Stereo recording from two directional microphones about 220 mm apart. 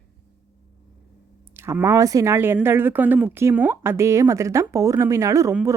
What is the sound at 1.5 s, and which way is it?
Speech, 10° right (ahead or behind).